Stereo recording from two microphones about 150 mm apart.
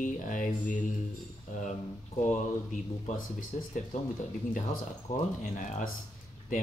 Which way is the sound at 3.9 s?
50° left (ahead or behind).